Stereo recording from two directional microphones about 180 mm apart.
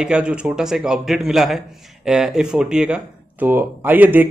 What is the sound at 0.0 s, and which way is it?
A man's voice, 5° right (ahead or behind).